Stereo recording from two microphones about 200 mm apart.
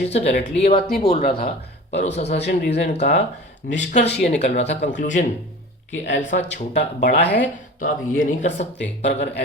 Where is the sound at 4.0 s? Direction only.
55° left (ahead or behind).